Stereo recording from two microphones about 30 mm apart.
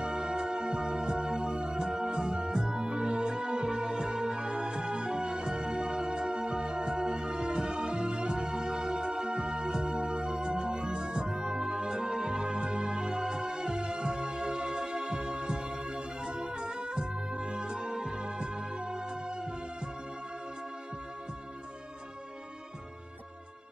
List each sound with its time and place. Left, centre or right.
0.0 s music: right